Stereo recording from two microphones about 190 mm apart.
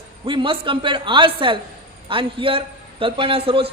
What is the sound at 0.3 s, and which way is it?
A man's voice, 25° right (ahead or behind).